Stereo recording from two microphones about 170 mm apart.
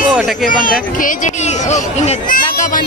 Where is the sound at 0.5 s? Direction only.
55° left (ahead or behind).